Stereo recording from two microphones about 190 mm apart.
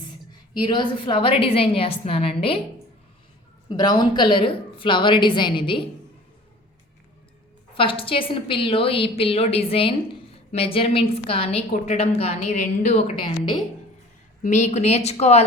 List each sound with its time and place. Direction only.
0.6 s a woman's voice: 25° left (ahead or behind)
3.7 s a woman's voice: 20° left (ahead or behind)
7.8 s a woman's voice: 30° left (ahead or behind)